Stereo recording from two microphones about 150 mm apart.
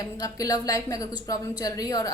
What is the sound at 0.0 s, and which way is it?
A woman's voice, 25° left (ahead or behind).